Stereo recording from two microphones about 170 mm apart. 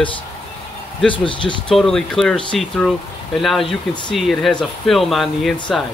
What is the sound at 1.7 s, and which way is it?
Speech, 5° left (ahead or behind).